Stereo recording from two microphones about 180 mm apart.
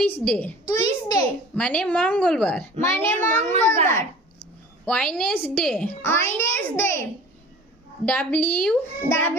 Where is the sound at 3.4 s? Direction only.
35° right (ahead or behind).